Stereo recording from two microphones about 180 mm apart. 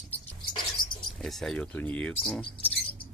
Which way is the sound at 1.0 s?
Centre (ahead or behind).